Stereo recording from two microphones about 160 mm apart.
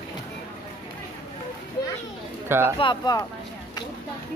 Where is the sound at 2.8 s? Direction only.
25° left (ahead or behind).